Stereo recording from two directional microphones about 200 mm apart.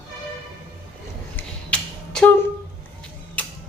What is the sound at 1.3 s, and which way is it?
Finger snapping, 5° left (ahead or behind).